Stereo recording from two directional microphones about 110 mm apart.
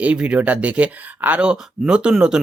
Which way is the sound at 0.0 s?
10° right (ahead or behind).